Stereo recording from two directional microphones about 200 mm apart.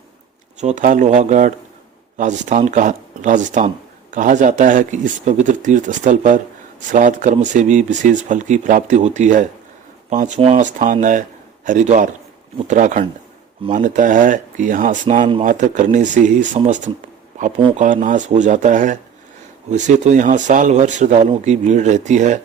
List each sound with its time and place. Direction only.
0.6 s a man's voice: 35° right (ahead or behind)